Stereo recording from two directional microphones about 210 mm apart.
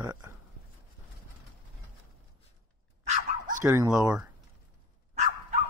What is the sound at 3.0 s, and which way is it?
Dog, 40° right (ahead or behind).